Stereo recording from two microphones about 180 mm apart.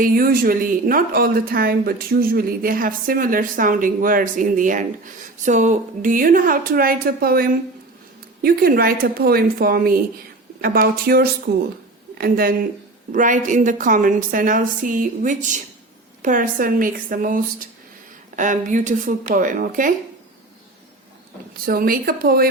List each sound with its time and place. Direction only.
0.0 s speech: 55° right (ahead or behind)
13.1 s speech: 45° right (ahead or behind)
21.6 s speech: 55° right (ahead or behind)